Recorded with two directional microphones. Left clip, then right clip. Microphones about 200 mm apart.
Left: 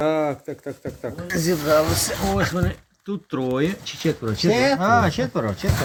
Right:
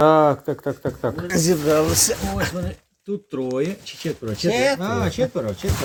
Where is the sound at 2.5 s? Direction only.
Centre (ahead or behind).